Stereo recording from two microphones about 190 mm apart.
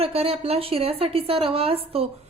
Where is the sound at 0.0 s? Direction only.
30° right (ahead or behind).